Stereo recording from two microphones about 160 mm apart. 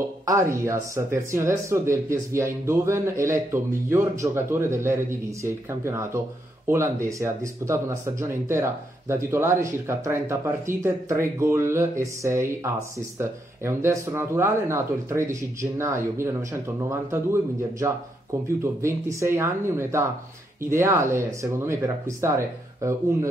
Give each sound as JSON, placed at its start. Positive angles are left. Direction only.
{"t": 0.2, "sound": "speech", "side_deg": -20}